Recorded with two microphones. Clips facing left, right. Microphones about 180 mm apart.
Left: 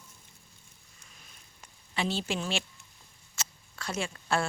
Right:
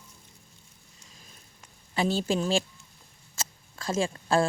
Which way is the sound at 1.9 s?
40° right (ahead or behind).